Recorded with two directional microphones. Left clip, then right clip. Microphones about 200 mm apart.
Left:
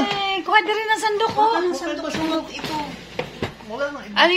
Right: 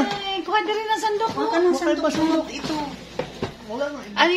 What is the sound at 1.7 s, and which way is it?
Speech, 45° right (ahead or behind).